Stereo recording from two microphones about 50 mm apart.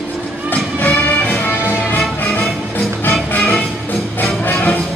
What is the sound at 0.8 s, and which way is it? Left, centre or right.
Music, left.